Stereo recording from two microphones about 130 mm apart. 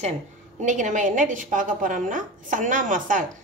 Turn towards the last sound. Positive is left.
turn(degrees=-90)